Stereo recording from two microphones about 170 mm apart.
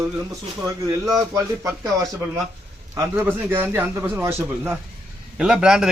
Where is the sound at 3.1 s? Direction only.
10° right (ahead or behind).